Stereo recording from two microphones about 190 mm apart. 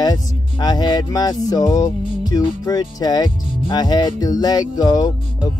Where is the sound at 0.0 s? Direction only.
20° left (ahead or behind).